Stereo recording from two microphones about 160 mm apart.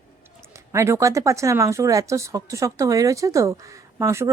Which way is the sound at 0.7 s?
20° right (ahead or behind).